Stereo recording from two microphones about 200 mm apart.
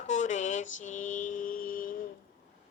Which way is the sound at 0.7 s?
40° left (ahead or behind).